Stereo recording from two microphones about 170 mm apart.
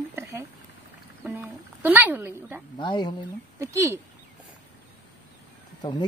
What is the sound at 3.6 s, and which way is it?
Speech, 15° right (ahead or behind).